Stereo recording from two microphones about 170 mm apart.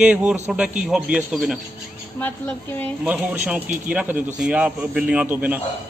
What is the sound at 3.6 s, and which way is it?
Speech, 50° right (ahead or behind).